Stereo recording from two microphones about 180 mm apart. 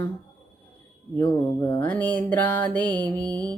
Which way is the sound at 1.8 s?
10° left (ahead or behind).